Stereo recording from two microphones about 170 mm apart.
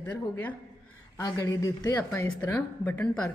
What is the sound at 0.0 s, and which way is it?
Speech, 10° left (ahead or behind).